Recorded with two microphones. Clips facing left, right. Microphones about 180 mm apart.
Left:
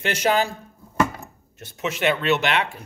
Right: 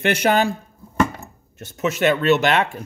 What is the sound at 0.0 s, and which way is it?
Speech, 60° right (ahead or behind).